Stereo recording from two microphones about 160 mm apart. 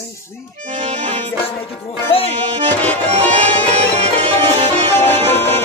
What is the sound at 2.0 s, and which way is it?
Music, 35° left (ahead or behind).